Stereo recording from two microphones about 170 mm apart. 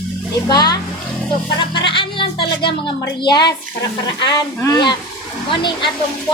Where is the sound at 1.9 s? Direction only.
30° left (ahead or behind).